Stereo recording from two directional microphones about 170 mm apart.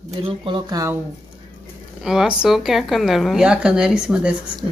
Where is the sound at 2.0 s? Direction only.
5° right (ahead or behind).